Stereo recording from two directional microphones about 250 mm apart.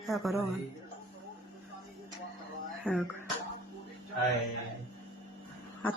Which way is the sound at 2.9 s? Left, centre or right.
Centre.